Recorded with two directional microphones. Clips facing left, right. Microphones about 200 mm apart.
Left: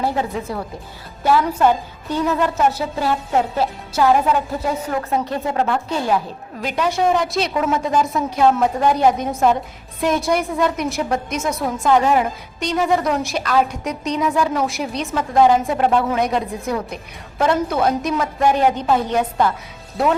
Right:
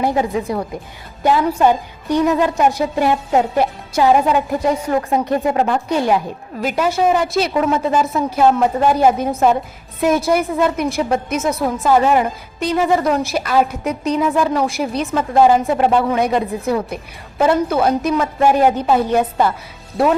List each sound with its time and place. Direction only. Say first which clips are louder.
0.0 s a woman's voice: right 4 dB; 15° right (ahead or behind)
6.6 s a woman's voice: right 3 dB; 5° right (ahead or behind)